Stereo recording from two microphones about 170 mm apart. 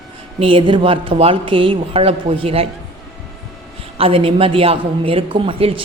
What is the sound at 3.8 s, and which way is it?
A woman's voice, 35° right (ahead or behind).